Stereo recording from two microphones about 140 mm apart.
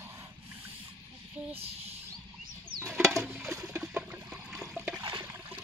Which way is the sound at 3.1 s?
15° right (ahead or behind).